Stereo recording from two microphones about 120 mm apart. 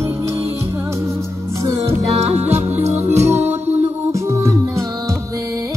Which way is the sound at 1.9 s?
60° right (ahead or behind).